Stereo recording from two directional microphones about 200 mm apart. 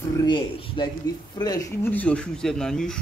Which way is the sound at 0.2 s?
25° left (ahead or behind).